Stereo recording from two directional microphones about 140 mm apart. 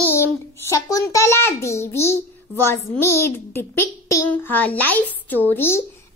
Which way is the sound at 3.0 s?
20° left (ahead or behind).